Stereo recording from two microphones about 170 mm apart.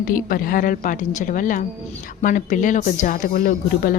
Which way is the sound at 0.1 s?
55° left (ahead or behind).